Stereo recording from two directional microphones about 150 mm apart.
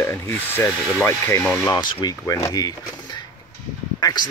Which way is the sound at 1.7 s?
30° left (ahead or behind).